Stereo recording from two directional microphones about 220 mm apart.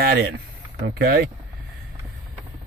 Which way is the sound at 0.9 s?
45° right (ahead or behind).